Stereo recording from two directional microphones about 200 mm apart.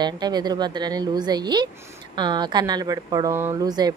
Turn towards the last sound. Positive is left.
turn(degrees=-20)  # may be behind; listen again after turning